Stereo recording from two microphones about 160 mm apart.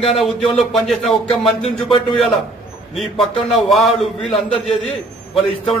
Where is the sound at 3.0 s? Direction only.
Centre (ahead or behind).